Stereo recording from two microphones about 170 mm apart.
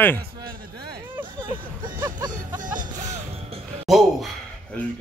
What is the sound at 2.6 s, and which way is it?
Music, 50° right (ahead or behind).